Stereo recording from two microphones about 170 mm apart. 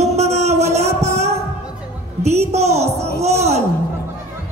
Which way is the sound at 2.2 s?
40° right (ahead or behind).